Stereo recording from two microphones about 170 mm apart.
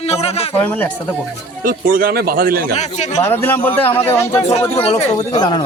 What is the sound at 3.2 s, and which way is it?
Speech, 10° left (ahead or behind).